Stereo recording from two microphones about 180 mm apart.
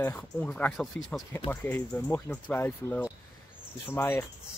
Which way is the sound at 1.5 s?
10° left (ahead or behind).